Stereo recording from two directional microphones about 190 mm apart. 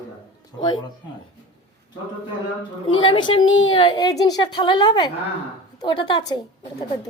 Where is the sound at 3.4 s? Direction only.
90° left.